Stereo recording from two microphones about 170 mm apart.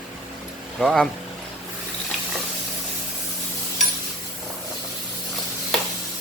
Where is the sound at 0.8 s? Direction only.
Centre (ahead or behind).